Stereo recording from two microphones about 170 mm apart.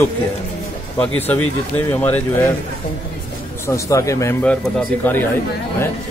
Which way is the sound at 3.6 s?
20° left (ahead or behind).